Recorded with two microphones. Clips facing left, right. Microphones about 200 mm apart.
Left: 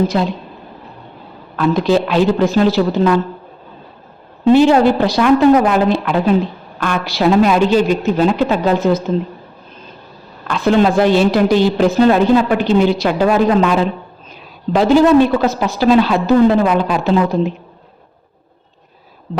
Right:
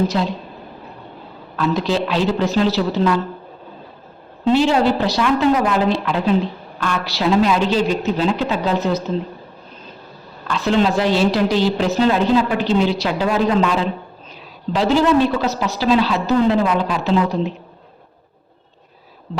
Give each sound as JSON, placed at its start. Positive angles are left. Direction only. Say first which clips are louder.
{"t": 1.5, "sound": "a woman's voice", "louder": "left 5 dB", "side_deg": 50}
{"t": 4.4, "sound": "a woman's voice", "louder": "left 6 dB", "side_deg": 50}
{"t": 10.5, "sound": "a woman's voice", "louder": "left 4 dB", "side_deg": 50}